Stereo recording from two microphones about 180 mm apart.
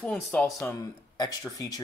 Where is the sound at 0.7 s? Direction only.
20° left (ahead or behind).